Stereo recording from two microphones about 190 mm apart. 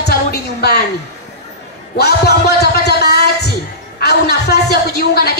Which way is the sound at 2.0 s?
60° left (ahead or behind).